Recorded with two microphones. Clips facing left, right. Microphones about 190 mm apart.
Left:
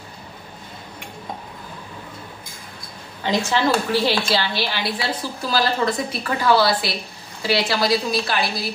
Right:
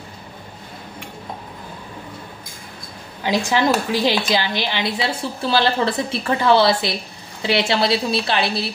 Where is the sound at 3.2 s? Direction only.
10° right (ahead or behind).